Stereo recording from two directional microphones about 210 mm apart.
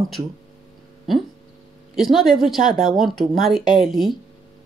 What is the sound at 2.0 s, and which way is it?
Speech, centre (ahead or behind).